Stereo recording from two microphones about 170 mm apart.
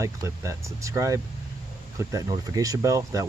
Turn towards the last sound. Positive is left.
turn(degrees=-20)  # may be behind; listen again after turning